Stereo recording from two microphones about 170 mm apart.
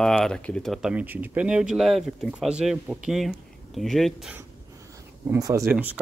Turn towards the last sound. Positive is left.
turn(degrees=-5)  # may be behind; listen again after turning